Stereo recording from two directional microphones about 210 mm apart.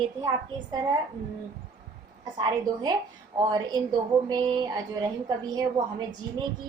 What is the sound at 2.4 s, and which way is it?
A woman's voice, 20° right (ahead or behind).